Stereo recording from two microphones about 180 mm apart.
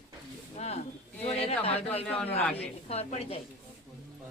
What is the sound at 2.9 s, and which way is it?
Speech, 35° left (ahead or behind).